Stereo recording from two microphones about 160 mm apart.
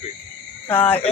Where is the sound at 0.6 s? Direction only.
20° left (ahead or behind).